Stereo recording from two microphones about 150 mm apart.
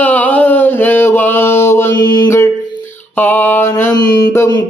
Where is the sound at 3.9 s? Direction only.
30° left (ahead or behind).